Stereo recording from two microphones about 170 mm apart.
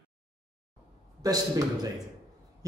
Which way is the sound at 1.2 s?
20° right (ahead or behind).